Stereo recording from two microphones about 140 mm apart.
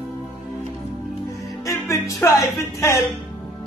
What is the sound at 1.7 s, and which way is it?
Music, 20° left (ahead or behind).